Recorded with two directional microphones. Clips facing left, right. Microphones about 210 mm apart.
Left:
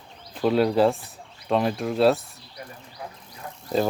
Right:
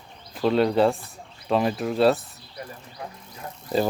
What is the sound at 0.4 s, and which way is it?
Speech, centre (ahead or behind).